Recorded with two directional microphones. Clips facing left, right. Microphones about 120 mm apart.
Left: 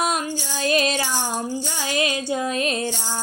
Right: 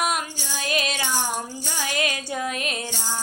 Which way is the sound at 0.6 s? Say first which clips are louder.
Left 6 dB; 35° left (ahead or behind).